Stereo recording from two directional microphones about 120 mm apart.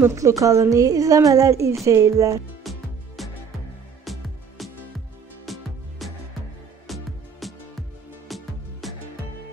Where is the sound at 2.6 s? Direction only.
Centre (ahead or behind).